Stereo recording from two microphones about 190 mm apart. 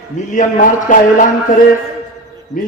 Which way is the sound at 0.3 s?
45° left (ahead or behind).